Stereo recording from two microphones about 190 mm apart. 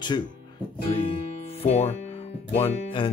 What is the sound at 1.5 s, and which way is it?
Speech, 30° left (ahead or behind).